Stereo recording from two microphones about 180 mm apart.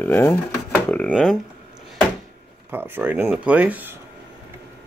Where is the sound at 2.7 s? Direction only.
10° right (ahead or behind).